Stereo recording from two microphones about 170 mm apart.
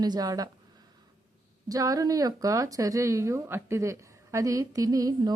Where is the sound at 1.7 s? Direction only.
20° right (ahead or behind).